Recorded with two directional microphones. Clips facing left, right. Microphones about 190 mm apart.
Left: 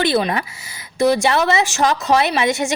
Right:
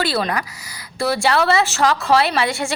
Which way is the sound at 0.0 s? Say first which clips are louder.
Left 3 dB; 20° left (ahead or behind).